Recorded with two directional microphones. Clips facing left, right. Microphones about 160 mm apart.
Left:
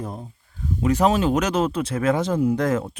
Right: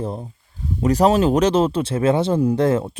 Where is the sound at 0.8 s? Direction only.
35° right (ahead or behind).